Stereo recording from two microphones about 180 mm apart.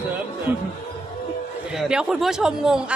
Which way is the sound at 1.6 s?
5° right (ahead or behind).